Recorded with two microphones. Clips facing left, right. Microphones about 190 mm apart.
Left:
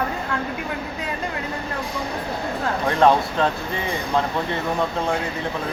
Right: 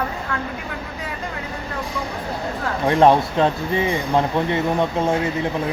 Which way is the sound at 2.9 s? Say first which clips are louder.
Right 3 dB; 25° right (ahead or behind).